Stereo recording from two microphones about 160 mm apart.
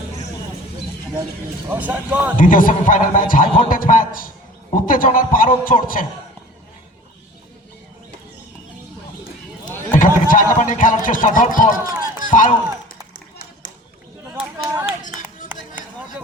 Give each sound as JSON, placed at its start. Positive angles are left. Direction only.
{"t": 1.7, "sound": "speech", "side_deg": -10}
{"t": 2.4, "sound": "a man's voice", "side_deg": 55}
{"t": 10.0, "sound": "speech", "side_deg": 55}
{"t": 11.9, "sound": "run", "side_deg": -20}
{"t": 12.2, "sound": "speech", "side_deg": 55}
{"t": 14.3, "sound": "a sound", "side_deg": -5}